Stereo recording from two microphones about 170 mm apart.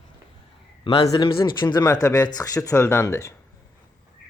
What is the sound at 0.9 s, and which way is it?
Speech, 25° left (ahead or behind).